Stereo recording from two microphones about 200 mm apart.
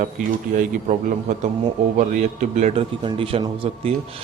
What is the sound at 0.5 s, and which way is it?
Speech, 40° right (ahead or behind).